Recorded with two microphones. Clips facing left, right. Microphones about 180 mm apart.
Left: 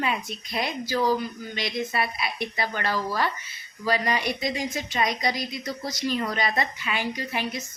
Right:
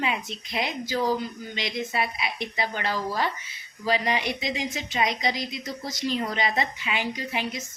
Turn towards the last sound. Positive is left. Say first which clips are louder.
# left 1 dB
turn(degrees=-20)  # may be behind; listen again after turning